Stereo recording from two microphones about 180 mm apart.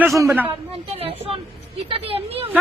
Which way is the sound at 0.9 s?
30° right (ahead or behind).